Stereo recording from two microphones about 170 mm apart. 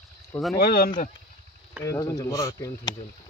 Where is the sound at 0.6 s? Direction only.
60° left (ahead or behind).